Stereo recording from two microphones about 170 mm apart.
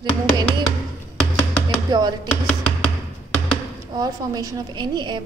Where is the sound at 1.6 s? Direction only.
25° right (ahead or behind).